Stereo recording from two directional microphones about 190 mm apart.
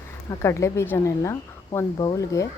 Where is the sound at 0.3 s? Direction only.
15° left (ahead or behind).